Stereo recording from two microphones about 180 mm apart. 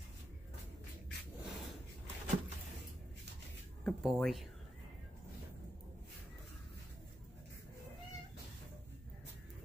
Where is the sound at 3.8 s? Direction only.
Centre (ahead or behind).